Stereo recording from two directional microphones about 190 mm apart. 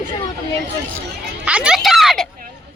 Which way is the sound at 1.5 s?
5° right (ahead or behind).